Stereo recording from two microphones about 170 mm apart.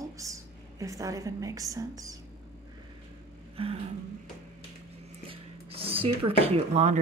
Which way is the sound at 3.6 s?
35° right (ahead or behind).